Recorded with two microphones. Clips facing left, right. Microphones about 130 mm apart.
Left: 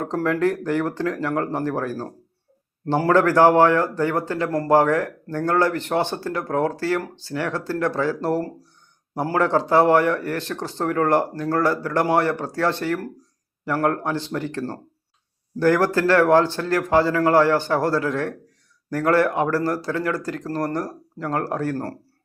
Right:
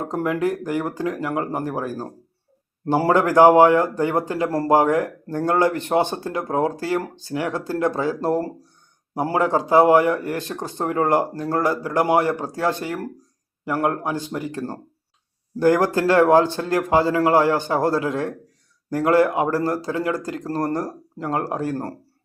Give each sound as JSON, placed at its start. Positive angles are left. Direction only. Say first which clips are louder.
{"t": 0.0, "sound": "speech", "louder": "left 1 dB", "side_deg": -10}
{"t": 3.1, "sound": "speech", "louder": "right 2 dB", "side_deg": -15}
{"t": 4.4, "sound": "speech", "louder": "right 1 dB", "side_deg": -30}
{"t": 4.7, "sound": "speech", "louder": "even", "side_deg": -15}
{"t": 9.4, "sound": "speech", "louder": "right 1 dB", "side_deg": -15}